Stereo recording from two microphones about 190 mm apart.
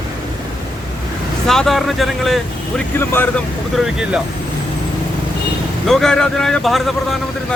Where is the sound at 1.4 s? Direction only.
Centre (ahead or behind).